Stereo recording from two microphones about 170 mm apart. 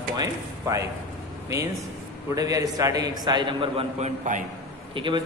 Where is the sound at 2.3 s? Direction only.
20° right (ahead or behind).